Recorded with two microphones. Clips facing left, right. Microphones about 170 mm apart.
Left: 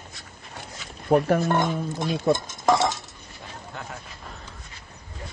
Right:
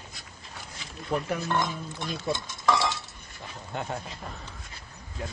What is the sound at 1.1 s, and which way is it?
Speech, 50° left (ahead or behind).